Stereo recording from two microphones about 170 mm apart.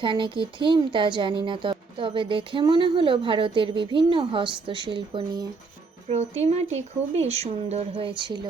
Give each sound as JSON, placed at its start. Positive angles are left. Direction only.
{"t": 0.0, "sound": "speech", "side_deg": -30}
{"t": 6.1, "sound": "speech", "side_deg": -40}